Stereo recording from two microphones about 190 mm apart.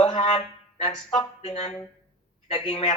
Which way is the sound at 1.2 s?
35° left (ahead or behind).